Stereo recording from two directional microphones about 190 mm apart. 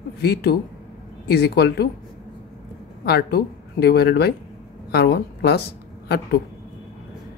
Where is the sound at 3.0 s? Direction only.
55° left (ahead or behind).